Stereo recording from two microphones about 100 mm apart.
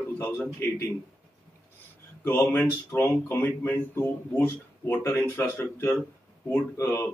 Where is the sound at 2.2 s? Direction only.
25° left (ahead or behind).